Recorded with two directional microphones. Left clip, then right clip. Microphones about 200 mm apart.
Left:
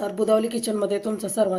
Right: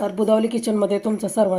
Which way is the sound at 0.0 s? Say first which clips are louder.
Right 2 dB; 35° right (ahead or behind).